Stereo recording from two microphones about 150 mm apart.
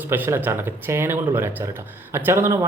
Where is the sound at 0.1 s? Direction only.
15° right (ahead or behind).